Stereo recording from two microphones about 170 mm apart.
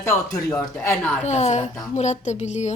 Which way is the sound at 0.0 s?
15° left (ahead or behind).